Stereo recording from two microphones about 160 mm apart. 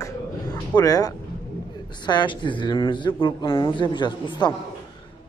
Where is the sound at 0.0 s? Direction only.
25° left (ahead or behind).